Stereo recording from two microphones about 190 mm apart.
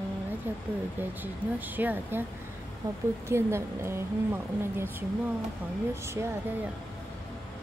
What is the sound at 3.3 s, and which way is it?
Speech, 15° right (ahead or behind).